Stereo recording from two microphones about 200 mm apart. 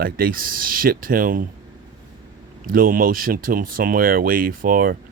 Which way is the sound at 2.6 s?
45° right (ahead or behind).